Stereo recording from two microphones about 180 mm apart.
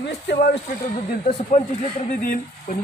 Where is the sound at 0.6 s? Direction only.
40° left (ahead or behind).